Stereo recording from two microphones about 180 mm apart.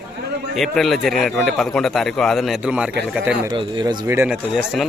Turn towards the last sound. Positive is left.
turn(degrees=0)  # may be behind; listen again after turning